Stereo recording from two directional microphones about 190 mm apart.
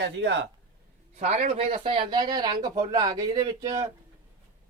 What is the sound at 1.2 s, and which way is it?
Speech, 40° right (ahead or behind).